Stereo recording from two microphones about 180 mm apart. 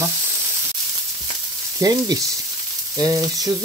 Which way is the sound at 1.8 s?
20° right (ahead or behind).